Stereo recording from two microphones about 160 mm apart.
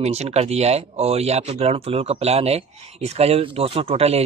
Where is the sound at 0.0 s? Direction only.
40° right (ahead or behind).